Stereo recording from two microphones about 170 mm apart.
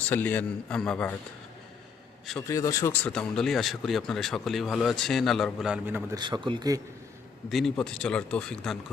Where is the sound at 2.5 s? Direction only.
20° left (ahead or behind).